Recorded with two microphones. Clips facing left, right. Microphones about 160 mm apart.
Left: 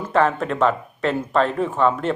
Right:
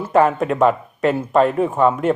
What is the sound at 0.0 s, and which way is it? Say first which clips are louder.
Speech: right 4 dB; 10° right (ahead or behind).